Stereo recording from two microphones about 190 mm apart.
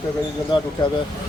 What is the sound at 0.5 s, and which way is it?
Speech, 25° left (ahead or behind).